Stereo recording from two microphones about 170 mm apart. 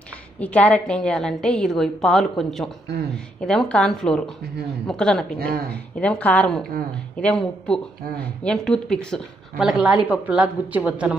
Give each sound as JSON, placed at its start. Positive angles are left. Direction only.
{"t": 0.4, "sound": "speech", "side_deg": 10}
{"t": 5.4, "sound": "speech", "side_deg": -60}
{"t": 5.9, "sound": "a woman's voice", "side_deg": 5}